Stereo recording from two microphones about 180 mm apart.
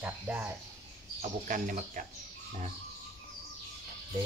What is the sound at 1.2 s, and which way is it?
Speech, 45° right (ahead or behind).